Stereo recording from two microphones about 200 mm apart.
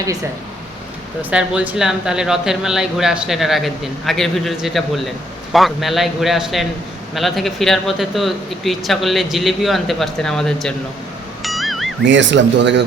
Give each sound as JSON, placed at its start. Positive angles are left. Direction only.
{"t": 1.2, "sound": "speech", "side_deg": -5}
{"t": 11.4, "sound": "music", "side_deg": 0}
{"t": 12.0, "sound": "speech", "side_deg": -65}